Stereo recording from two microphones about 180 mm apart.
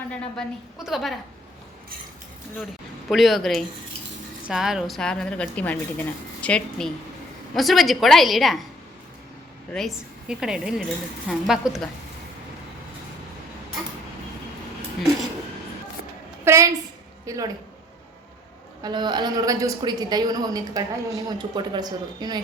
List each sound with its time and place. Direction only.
0.1 s a woman's voice: 5° left (ahead or behind)
3.1 s a woman's voice: centre (ahead or behind)
9.7 s a woman's voice: centre (ahead or behind)
16.4 s a sound: 15° right (ahead or behind)
18.8 s a man's voice: 25° right (ahead or behind)